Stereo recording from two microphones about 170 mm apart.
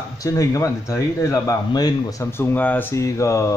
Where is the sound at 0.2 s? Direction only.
20° left (ahead or behind).